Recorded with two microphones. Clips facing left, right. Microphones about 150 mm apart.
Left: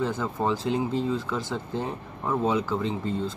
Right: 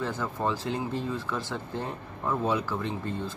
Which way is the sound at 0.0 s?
20° left (ahead or behind).